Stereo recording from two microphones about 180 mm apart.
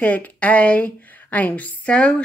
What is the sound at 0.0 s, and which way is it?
A woman's voice, 10° left (ahead or behind).